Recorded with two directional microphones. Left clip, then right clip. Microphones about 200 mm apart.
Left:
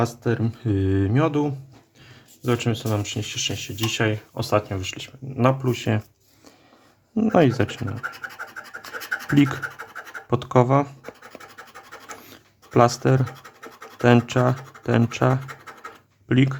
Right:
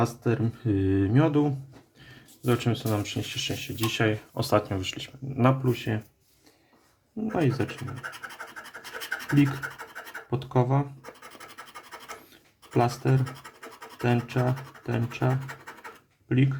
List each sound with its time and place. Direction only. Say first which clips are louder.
0.0 s speech: left 3 dB; 15° left (ahead or behind)
5.6 s speech: left 4 dB; 30° left (ahead or behind)
7.3 s speech: left 9 dB; 35° left (ahead or behind)
8.6 s scratch: left 4 dB; centre (ahead or behind)
10.2 s speech: left 8 dB; 35° left (ahead or behind)
11.0 s scratch: left 4 dB; centre (ahead or behind)
12.7 s speech: left 8 dB; 30° left (ahead or behind)